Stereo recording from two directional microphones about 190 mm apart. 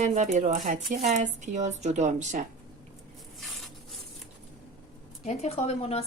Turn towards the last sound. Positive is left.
turn(degrees=35)  # may be behind; listen again after turning